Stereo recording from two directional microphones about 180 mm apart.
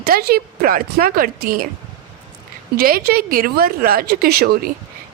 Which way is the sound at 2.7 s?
55° right (ahead or behind).